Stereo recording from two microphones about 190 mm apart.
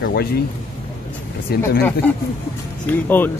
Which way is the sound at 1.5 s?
55° left (ahead or behind).